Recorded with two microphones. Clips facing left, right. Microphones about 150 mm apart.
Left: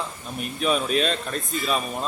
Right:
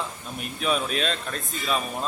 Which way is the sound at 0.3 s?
Centre (ahead or behind).